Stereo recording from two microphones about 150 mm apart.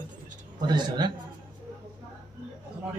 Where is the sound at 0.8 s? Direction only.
30° right (ahead or behind).